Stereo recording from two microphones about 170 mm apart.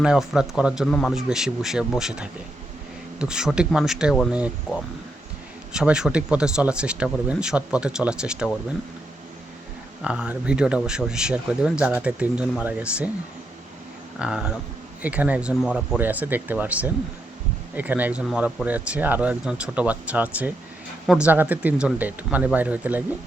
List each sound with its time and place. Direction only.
0.0 s speech: 5° right (ahead or behind)
5.7 s speech: 5° right (ahead or behind)
10.0 s speech: 5° right (ahead or behind)
14.2 s speech: 5° right (ahead or behind)